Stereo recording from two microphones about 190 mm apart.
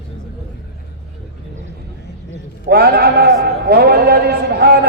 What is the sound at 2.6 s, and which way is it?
A man's voice, 55° right (ahead or behind).